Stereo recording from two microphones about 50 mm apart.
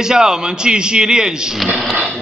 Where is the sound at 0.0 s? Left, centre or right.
Centre.